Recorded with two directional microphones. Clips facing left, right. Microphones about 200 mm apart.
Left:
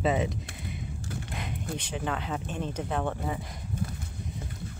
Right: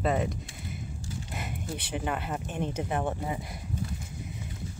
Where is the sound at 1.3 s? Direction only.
5° right (ahead or behind).